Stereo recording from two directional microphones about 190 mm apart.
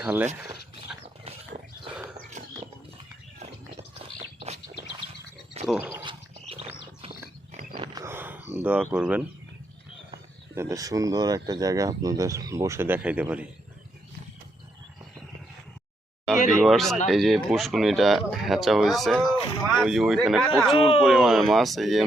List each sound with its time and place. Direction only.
0.0 s speech: 10° right (ahead or behind)
5.6 s speech: 10° right (ahead or behind)
6.0 s a sound: 25° right (ahead or behind)
7.7 s a sound: 20° right (ahead or behind)
8.4 s speech: 10° right (ahead or behind)
10.5 s speech: 15° right (ahead or behind)
16.5 s speech: centre (ahead or behind)
20.7 s speech: 30° left (ahead or behind)
21.0 s speech: centre (ahead or behind)